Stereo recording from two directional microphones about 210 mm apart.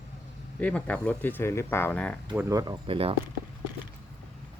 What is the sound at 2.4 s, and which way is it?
Speech, 15° right (ahead or behind).